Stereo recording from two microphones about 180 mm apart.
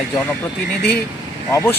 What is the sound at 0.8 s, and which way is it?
Speech, 60° left (ahead or behind).